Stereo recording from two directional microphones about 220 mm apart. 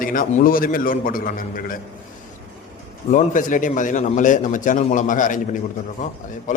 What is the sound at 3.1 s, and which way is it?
A man's voice, 35° left (ahead or behind).